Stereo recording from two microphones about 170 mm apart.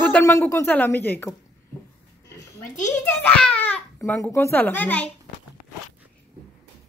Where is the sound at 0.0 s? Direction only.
10° left (ahead or behind).